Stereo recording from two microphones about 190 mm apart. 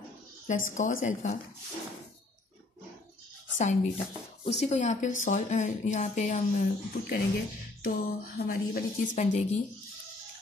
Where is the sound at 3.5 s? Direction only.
40° left (ahead or behind).